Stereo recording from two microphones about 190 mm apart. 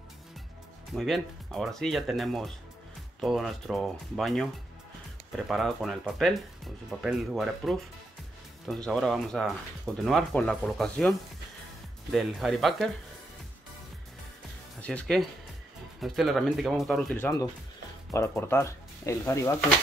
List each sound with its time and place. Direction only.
0.9 s speech: centre (ahead or behind)
5.5 s speech: centre (ahead or behind)
14.8 s speech: 5° left (ahead or behind)